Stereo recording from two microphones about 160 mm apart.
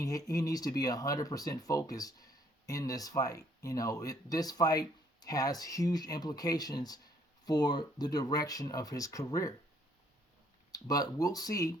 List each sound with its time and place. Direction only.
0.0 s speech: 20° left (ahead or behind)
10.7 s speech: 25° left (ahead or behind)